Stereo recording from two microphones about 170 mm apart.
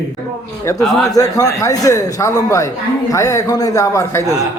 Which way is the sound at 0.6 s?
20° left (ahead or behind).